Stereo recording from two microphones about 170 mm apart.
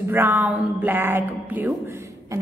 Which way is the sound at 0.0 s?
10° right (ahead or behind).